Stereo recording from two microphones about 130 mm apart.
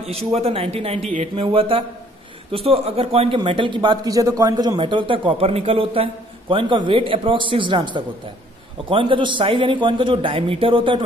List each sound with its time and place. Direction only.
0.0 s speech: 50° right (ahead or behind)